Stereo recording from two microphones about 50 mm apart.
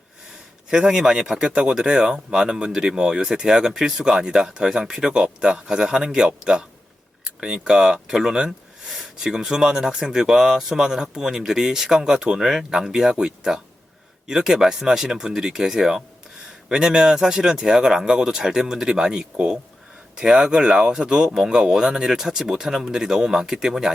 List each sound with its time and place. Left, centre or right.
0.7 s speech: centre